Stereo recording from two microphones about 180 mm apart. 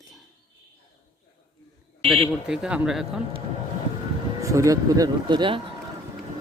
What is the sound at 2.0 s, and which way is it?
Speech, centre (ahead or behind).